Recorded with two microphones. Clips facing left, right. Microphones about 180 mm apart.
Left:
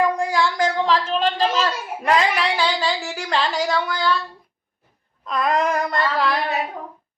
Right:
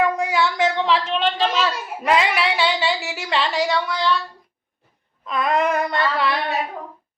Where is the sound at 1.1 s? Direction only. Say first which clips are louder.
Left 1 dB; 40° left (ahead or behind).